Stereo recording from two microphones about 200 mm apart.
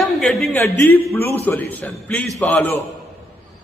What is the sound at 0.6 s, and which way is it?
A man's voice, 10° left (ahead or behind).